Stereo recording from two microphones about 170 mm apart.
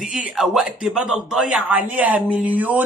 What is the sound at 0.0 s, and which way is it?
A man's voice, 5° right (ahead or behind).